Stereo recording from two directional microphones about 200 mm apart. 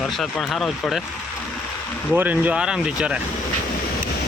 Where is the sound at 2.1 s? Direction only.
10° right (ahead or behind).